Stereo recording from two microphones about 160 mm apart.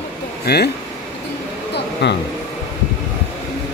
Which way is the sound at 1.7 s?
90° left.